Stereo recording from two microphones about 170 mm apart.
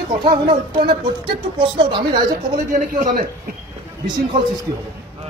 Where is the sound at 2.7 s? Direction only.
50° right (ahead or behind).